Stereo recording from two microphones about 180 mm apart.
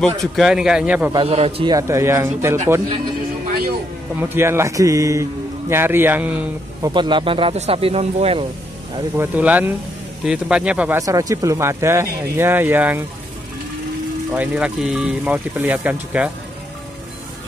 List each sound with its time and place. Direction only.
0.0 s a man's voice: centre (ahead or behind)
1.1 s speech: 35° right (ahead or behind)
1.7 s a man's voice: 15° right (ahead or behind)
4.1 s a man's voice: 10° right (ahead or behind)
6.9 s speech: 25° right (ahead or behind)
9.1 s a man's voice: 10° right (ahead or behind)
11.0 s a man's voice: 20° right (ahead or behind)
14.3 s a man's voice: 5° right (ahead or behind)